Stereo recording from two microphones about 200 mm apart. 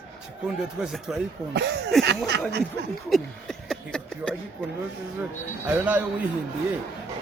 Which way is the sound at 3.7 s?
5° left (ahead or behind).